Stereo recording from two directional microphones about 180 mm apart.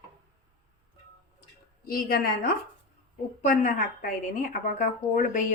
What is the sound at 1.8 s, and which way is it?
A woman's voice, 55° left (ahead or behind).